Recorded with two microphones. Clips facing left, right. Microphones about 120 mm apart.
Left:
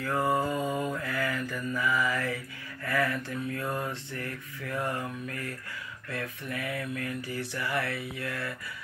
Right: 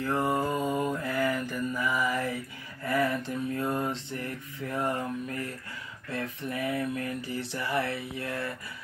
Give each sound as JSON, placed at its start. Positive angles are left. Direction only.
{"t": 0.0, "sound": "mantra", "side_deg": -20}